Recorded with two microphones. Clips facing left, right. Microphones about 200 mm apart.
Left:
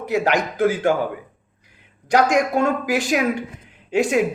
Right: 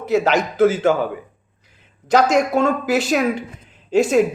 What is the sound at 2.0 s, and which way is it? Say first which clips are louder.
Speech: right 2 dB; 15° left (ahead or behind).